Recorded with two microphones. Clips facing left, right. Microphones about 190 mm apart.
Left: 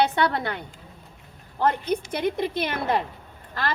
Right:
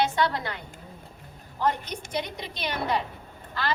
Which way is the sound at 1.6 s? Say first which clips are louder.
Left 4 dB; 55° left (ahead or behind).